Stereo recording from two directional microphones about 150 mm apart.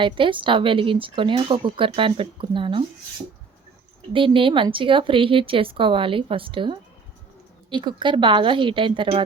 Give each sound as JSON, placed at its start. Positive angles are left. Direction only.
{"t": 0.0, "sound": "speech", "side_deg": -35}
{"t": 4.1, "sound": "speech", "side_deg": -35}